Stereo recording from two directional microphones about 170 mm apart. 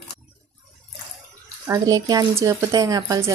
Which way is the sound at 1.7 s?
20° right (ahead or behind).